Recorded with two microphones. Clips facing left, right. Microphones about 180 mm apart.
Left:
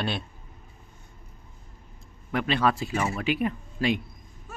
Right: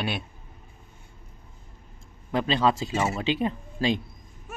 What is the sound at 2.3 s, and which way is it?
Speech, 25° right (ahead or behind).